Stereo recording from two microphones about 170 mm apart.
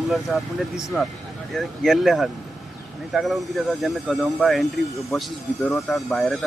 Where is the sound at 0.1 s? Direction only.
Centre (ahead or behind).